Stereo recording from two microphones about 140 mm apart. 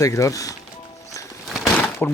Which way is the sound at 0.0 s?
25° left (ahead or behind).